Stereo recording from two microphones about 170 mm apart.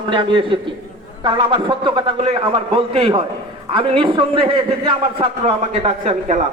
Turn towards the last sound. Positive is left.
turn(degrees=-40)  # may be behind; listen again after turning